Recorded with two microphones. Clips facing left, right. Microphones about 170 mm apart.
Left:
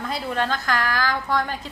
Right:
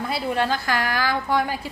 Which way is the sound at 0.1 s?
10° right (ahead or behind).